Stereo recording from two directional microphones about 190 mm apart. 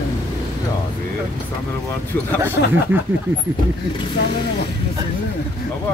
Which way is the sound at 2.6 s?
60° left (ahead or behind).